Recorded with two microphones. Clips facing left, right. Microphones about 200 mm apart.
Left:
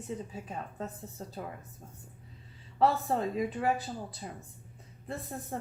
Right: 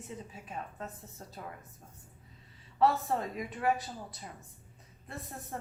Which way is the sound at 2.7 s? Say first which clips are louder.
Left 1 dB; 30° left (ahead or behind).